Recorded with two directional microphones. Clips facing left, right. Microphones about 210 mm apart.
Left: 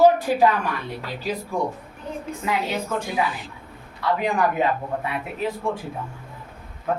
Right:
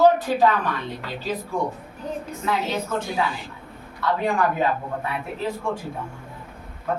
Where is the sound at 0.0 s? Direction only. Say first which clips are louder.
Left 1 dB; 10° left (ahead or behind).